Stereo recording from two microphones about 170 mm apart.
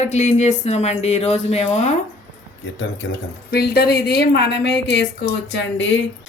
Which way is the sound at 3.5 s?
70° left (ahead or behind).